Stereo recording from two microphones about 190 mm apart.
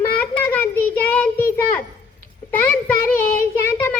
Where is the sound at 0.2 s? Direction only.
10° left (ahead or behind).